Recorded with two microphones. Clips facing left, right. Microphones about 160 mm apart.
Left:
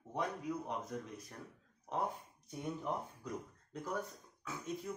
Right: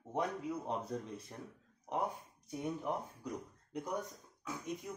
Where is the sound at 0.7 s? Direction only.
30° right (ahead or behind).